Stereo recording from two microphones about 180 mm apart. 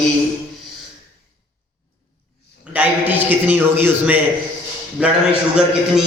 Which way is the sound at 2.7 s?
10° right (ahead or behind).